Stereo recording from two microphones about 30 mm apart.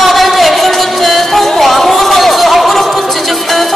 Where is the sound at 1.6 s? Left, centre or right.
Centre.